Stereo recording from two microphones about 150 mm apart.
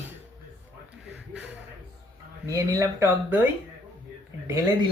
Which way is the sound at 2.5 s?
20° right (ahead or behind).